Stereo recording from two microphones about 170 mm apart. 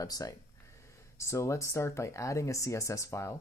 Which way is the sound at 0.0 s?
20° left (ahead or behind).